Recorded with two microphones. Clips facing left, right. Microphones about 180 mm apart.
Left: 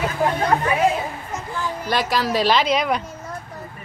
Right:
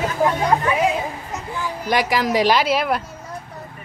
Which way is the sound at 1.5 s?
15° right (ahead or behind).